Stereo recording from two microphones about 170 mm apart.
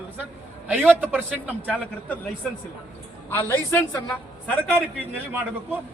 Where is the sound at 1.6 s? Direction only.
5° left (ahead or behind).